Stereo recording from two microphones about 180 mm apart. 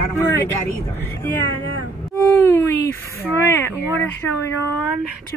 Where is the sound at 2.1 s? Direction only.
15° left (ahead or behind).